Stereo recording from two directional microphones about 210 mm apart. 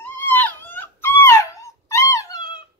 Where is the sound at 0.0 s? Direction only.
10° left (ahead or behind).